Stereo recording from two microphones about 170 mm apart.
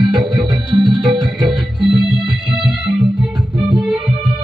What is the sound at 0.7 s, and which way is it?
Music, 30° right (ahead or behind).